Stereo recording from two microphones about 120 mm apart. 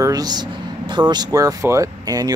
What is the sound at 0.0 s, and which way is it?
Speech, 30° right (ahead or behind).